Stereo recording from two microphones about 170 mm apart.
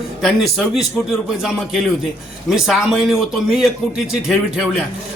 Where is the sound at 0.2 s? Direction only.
Centre (ahead or behind).